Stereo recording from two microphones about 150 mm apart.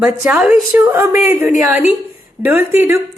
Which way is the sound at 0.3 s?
5° right (ahead or behind).